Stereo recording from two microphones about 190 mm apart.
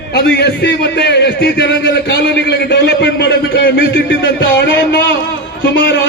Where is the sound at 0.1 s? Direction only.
55° left (ahead or behind).